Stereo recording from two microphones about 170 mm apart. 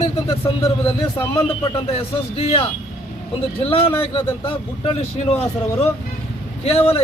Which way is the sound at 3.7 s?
35° left (ahead or behind).